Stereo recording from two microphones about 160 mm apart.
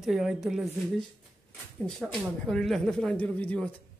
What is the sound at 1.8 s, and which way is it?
Speech, 5° left (ahead or behind).